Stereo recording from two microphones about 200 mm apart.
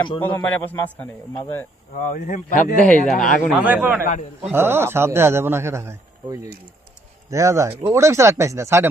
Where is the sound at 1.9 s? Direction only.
40° left (ahead or behind).